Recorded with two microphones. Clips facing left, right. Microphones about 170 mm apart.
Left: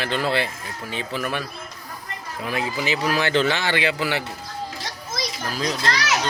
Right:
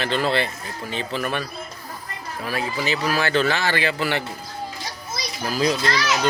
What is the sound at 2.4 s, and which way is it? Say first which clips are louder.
Speech: even; 20° left (ahead or behind).